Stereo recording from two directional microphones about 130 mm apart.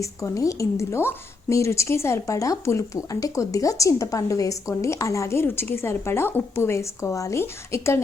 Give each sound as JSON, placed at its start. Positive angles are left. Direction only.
{"t": 0.0, "sound": "a woman's voice", "side_deg": 25}